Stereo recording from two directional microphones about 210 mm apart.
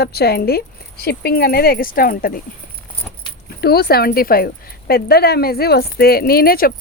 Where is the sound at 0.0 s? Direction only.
50° left (ahead or behind).